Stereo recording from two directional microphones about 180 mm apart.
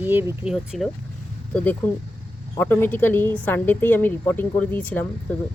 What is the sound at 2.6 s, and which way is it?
A woman's voice, 10° left (ahead or behind).